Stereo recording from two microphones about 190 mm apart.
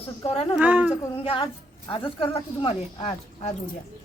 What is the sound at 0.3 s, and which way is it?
Speech, 30° left (ahead or behind).